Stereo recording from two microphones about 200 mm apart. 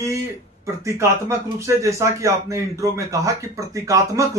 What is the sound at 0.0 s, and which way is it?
A man's voice, 15° right (ahead or behind).